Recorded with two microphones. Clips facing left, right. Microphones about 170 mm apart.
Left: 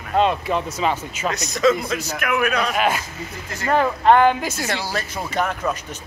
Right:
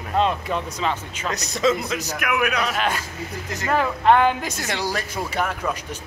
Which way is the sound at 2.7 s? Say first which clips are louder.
Left 3 dB; 10° left (ahead or behind).